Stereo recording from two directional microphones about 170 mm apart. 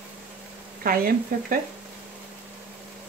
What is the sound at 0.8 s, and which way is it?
Speech, 60° right (ahead or behind).